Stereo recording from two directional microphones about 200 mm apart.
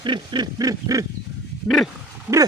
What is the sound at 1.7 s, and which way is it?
Speech, centre (ahead or behind).